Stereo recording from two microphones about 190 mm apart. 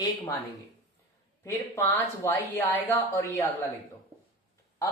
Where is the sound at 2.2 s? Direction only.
15° left (ahead or behind).